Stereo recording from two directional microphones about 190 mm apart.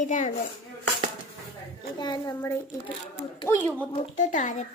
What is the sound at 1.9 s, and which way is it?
Speech, 25° left (ahead or behind).